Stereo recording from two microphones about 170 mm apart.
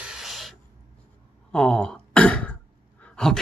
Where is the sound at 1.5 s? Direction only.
5° left (ahead or behind).